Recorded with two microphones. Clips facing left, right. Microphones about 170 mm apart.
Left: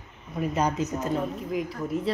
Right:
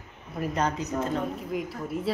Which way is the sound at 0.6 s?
15° left (ahead or behind).